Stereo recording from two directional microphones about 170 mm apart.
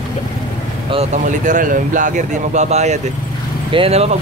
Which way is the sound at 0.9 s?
45° right (ahead or behind).